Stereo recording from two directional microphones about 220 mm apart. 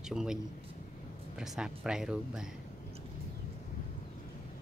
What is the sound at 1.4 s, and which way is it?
Speech, centre (ahead or behind).